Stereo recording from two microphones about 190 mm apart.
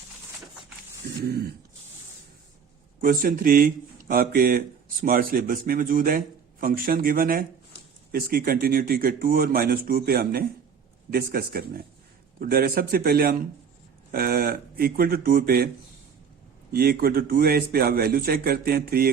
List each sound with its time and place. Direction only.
1.2 s speech: 55° right (ahead or behind)
3.0 s speech: 50° right (ahead or behind)
16.7 s speech: 50° right (ahead or behind)